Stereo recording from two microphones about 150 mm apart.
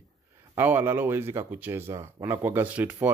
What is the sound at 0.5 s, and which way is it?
Speech, 15° right (ahead or behind).